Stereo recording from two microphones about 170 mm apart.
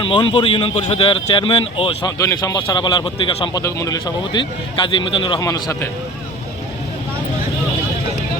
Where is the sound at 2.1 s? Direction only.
20° left (ahead or behind).